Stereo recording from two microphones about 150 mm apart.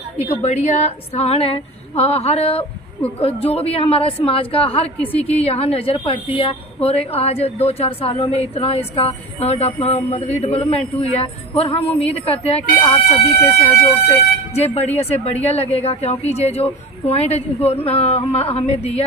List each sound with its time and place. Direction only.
0.4 s speech: 45° left (ahead or behind)